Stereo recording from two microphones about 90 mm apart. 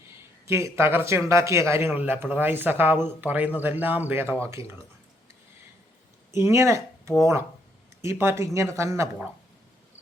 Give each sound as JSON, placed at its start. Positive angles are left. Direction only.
{"t": 0.2, "sound": "speech", "side_deg": -30}
{"t": 1.9, "sound": "speech", "side_deg": -20}
{"t": 6.3, "sound": "speech", "side_deg": -30}